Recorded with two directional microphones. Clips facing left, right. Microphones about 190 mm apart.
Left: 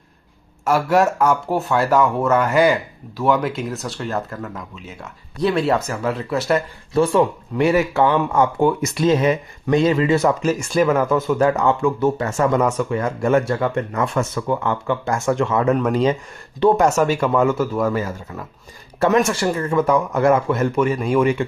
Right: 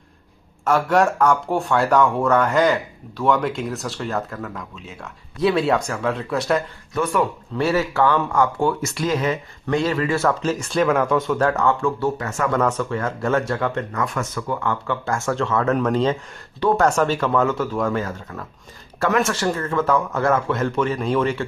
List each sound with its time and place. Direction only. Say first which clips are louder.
0.7 s speech: left 1 dB; 5° left (ahead or behind)
6.9 s speech: left 5 dB; 25° left (ahead or behind); by 13.8 s 10° left (ahead or behind)
13.9 s speech: left 4 dB; 25° left (ahead or behind)